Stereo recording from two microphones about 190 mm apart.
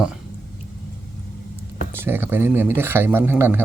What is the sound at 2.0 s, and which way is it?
Speech, 10° right (ahead or behind).